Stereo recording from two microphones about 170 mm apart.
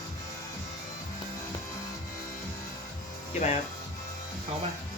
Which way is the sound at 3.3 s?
40° left (ahead or behind).